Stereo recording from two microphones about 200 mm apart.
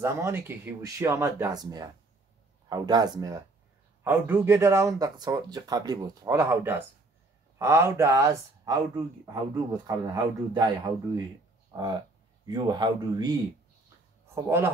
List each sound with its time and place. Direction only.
0.0 s speech: 10° right (ahead or behind)
11.7 s speech: 20° right (ahead or behind)